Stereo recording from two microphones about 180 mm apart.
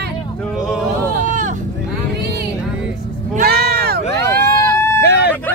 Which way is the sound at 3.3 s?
55° right (ahead or behind).